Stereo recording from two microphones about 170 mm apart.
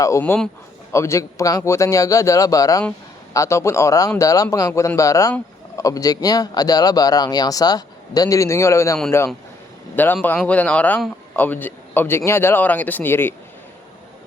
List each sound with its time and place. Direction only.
0.0 s a man's voice: 15° left (ahead or behind)